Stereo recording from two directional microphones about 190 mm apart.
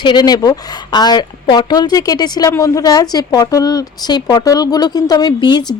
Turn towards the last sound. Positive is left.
turn(degrees=25)  # may be behind; listen again after turning